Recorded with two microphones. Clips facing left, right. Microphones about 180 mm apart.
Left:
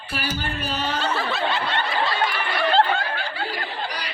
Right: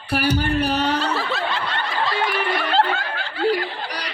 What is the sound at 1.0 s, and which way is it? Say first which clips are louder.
Snicker: right 1 dB; centre (ahead or behind).